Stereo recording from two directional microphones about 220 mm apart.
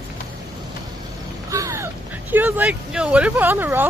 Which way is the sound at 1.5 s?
15° right (ahead or behind).